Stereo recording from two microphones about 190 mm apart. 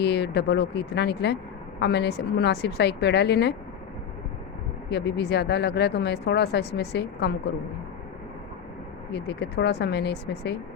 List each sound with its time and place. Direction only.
0.0 s speech: 60° left (ahead or behind)
4.9 s speech: 60° left (ahead or behind)
9.1 s speech: 60° left (ahead or behind)